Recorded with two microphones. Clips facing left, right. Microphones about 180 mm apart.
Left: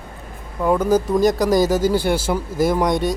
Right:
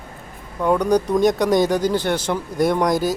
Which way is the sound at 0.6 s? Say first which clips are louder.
Even; 5° left (ahead or behind).